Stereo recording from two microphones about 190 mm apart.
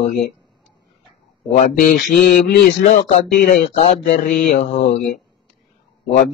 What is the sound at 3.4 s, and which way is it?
Mantra, 40° left (ahead or behind).